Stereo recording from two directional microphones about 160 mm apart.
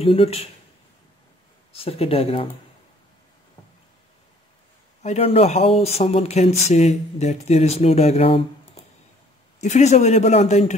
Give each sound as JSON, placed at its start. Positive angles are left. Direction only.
{"t": 0.0, "sound": "speech", "side_deg": 35}
{"t": 1.7, "sound": "speech", "side_deg": 40}
{"t": 5.0, "sound": "speech", "side_deg": 40}